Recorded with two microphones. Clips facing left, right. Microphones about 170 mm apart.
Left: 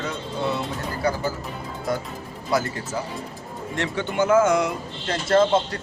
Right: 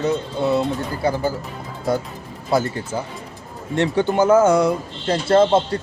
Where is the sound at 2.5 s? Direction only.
25° right (ahead or behind).